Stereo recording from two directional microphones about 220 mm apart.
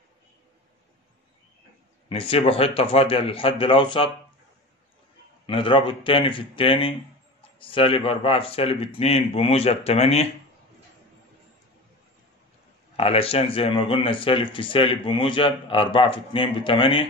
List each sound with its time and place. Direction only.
2.0 s speech: 25° left (ahead or behind)
5.5 s speech: 25° left (ahead or behind)
12.9 s speech: 25° left (ahead or behind)